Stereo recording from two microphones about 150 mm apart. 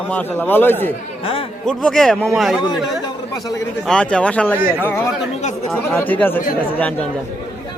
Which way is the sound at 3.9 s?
5° left (ahead or behind).